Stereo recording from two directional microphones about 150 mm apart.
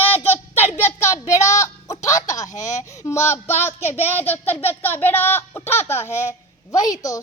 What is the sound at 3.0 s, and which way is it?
Child singing, 20° left (ahead or behind).